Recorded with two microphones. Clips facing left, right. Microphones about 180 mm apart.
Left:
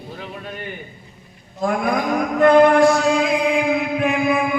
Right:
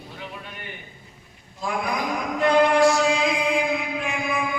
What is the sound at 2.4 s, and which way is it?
Music, 50° left (ahead or behind).